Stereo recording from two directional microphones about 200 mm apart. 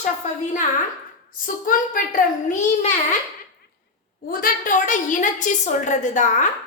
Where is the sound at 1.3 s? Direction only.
45° left (ahead or behind).